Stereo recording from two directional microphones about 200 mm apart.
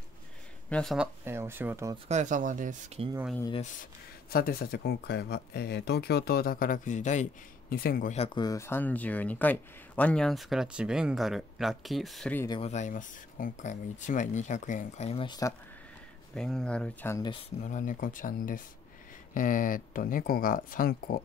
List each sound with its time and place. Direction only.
0.7 s speech: 5° left (ahead or behind)
1.2 s speech: 10° right (ahead or behind)
2.0 s speech: 35° right (ahead or behind)
4.3 s speech: 50° left (ahead or behind)
7.7 s speech: 50° left (ahead or behind)
8.4 s speech: 15° left (ahead or behind)
12.4 s speech: 30° left (ahead or behind)
16.3 s speech: 5° left (ahead or behind)
17.2 s speech: 25° left (ahead or behind); by 21.2 s 45° left (ahead or behind)